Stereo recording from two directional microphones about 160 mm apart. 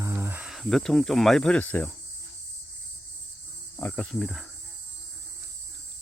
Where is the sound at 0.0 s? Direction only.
15° right (ahead or behind).